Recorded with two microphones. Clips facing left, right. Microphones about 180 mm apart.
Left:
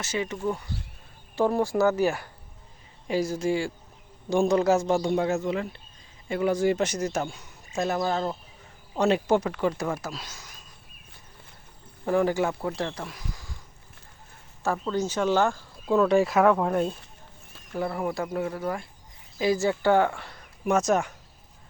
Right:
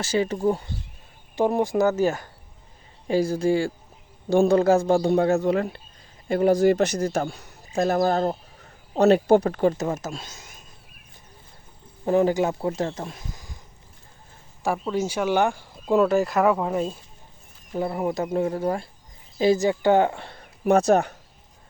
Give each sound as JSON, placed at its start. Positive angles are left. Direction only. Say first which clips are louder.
{"t": 0.0, "sound": "speech", "louder": "right 6 dB", "side_deg": -35}
{"t": 1.4, "sound": "speech", "louder": "right 2 dB", "side_deg": -20}
{"t": 3.1, "sound": "speech", "louder": "right 4 dB", "side_deg": -30}
{"t": 4.9, "sound": "a man's voice", "louder": "right 5 dB", "side_deg": -35}
{"t": 9.7, "sound": "speech", "louder": "right 3 dB", "side_deg": -20}
{"t": 12.0, "sound": "speech", "louder": "right 3 dB", "side_deg": -20}
{"t": 14.6, "sound": "speech", "louder": "right 2 dB", "side_deg": -15}
{"t": 16.0, "sound": "speech", "louder": "even", "side_deg": 0}
{"t": 17.7, "sound": "speech", "louder": "right 3 dB", "side_deg": -20}